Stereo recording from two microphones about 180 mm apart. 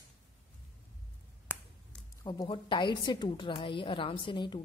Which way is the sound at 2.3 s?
25° left (ahead or behind).